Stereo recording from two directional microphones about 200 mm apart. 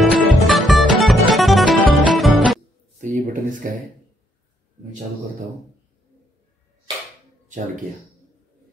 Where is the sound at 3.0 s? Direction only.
40° right (ahead or behind).